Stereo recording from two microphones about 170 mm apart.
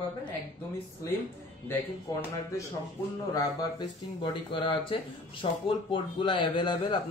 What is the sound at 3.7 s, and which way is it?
Speech, 25° left (ahead or behind).